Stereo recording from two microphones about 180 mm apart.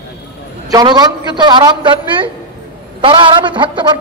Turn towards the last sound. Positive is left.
turn(degrees=-25)  # may be behind; listen again after turning